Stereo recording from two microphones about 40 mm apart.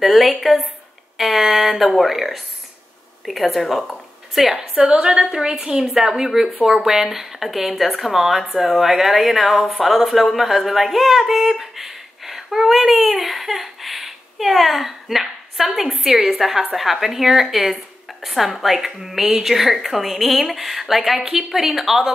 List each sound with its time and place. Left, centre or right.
0.0 s a woman's voice: centre
4.7 s a woman's voice: right; by 22.1 s centre